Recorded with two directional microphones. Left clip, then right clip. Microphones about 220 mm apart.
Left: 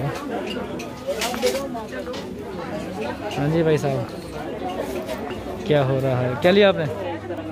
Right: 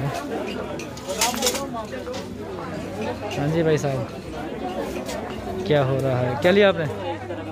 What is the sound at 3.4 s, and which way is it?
Speech, 5° left (ahead or behind).